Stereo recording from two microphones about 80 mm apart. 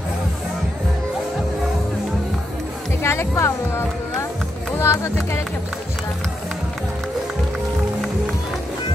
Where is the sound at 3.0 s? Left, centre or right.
Left.